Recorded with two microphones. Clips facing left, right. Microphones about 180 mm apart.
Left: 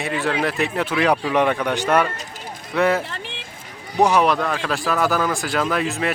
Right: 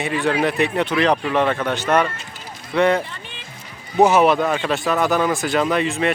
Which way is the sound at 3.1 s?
80° left.